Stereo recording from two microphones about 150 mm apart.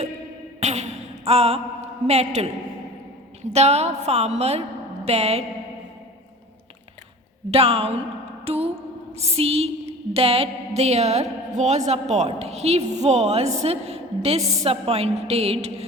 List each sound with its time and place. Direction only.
0.6 s a sound: 45° right (ahead or behind)
3.5 s music: 45° right (ahead or behind)
7.5 s a woman's voice: 40° right (ahead or behind)
9.1 s music: 45° right (ahead or behind)